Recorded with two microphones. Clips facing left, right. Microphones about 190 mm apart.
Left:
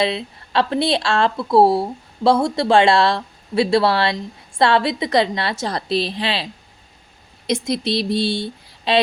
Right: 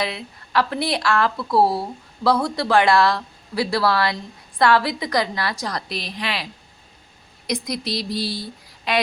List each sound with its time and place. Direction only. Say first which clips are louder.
0.0 s speech: left 6 dB; 25° left (ahead or behind)